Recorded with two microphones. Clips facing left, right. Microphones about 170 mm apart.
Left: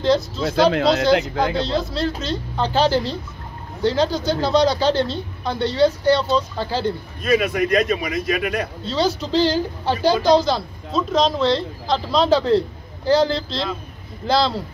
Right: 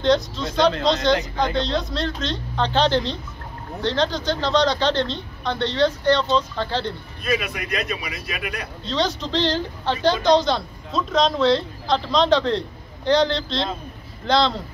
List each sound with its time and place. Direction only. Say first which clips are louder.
0.0 s a woman's voice: left 1 dB; 5° left (ahead or behind)
7.2 s speech: left 7 dB; 45° left (ahead or behind)
8.8 s a woman's voice: left 1 dB; 5° left (ahead or behind)